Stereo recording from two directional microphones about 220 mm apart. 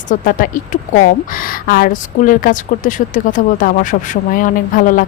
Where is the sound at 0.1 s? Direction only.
40° left (ahead or behind).